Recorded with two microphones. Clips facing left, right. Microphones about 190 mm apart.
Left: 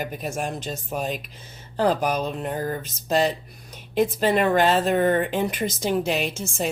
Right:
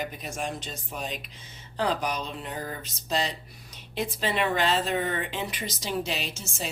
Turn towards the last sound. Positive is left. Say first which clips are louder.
# left 9 dB
turn(degrees=55)  # may be behind; listen again after turning